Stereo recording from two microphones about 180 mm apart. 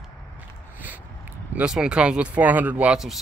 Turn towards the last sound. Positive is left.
turn(degrees=0)  # may be behind; listen again after turning